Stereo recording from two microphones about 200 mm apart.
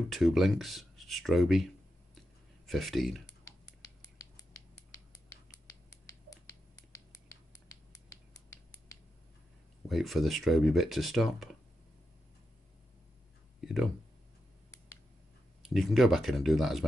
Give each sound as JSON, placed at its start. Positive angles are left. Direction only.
{"t": 0.1, "sound": "speech", "side_deg": 0}
{"t": 3.4, "sound": "a sound", "side_deg": 15}
{"t": 5.3, "sound": "finger snapping", "side_deg": 15}
{"t": 9.8, "sound": "speech", "side_deg": 0}
{"t": 15.6, "sound": "speech", "side_deg": 0}